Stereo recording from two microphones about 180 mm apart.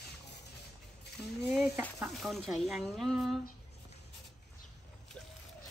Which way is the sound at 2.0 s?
Centre (ahead or behind).